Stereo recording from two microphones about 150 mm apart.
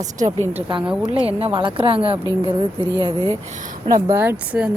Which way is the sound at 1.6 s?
35° right (ahead or behind).